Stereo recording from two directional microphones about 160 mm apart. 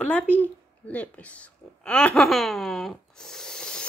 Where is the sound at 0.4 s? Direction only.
10° left (ahead or behind).